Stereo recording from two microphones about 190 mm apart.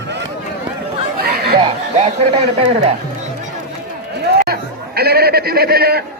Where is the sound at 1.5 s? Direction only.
30° right (ahead or behind).